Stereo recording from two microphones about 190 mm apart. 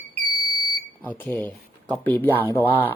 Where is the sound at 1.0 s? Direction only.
10° left (ahead or behind).